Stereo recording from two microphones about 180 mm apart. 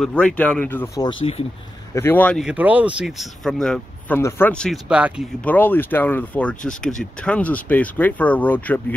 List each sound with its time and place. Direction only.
0.0 s speech: 5° left (ahead or behind)
1.0 s speech: 30° left (ahead or behind)
2.0 s speech: 10° left (ahead or behind)
2.4 s speech: 10° right (ahead or behind)
4.8 s speech: 5° right (ahead or behind)
5.4 s speech: 10° left (ahead or behind)